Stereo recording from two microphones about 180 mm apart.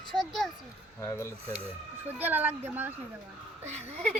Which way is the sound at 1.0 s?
15° left (ahead or behind).